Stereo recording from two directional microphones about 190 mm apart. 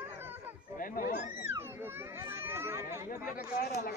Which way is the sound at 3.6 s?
55° left (ahead or behind).